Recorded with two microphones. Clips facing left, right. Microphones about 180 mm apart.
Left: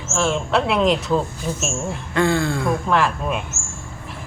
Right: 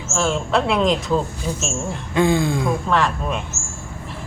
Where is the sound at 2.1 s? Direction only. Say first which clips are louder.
Right 2 dB; 15° right (ahead or behind).